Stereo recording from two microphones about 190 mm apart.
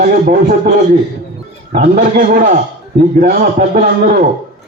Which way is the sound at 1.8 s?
40° right (ahead or behind).